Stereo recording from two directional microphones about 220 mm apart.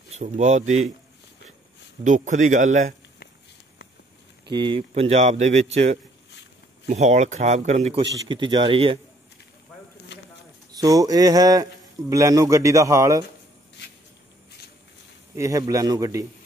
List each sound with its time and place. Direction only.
0.2 s speech: 30° right (ahead or behind)
2.0 s speech: 35° right (ahead or behind)
4.5 s speech: 20° right (ahead or behind)
10.1 s a sound: 55° left (ahead or behind)
10.7 s speech: 15° right (ahead or behind)
15.3 s speech: 15° right (ahead or behind)